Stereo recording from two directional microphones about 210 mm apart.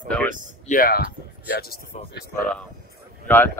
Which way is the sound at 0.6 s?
40° left (ahead or behind).